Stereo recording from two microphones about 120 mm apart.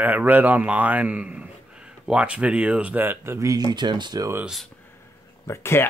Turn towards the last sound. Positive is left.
turn(degrees=20)  # may be behind; listen again after turning